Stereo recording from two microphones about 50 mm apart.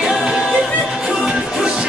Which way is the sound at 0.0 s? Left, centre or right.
Centre.